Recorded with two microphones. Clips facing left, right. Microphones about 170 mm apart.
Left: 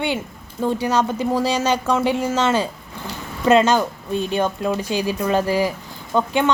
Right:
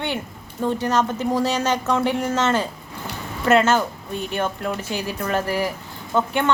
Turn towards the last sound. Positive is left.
turn(degrees=15)  # may be behind; listen again after turning